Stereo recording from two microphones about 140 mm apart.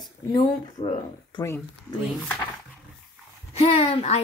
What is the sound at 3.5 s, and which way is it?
Speech, 45° left (ahead or behind).